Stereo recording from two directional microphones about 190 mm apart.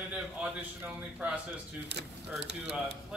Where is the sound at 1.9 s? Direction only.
65° right (ahead or behind).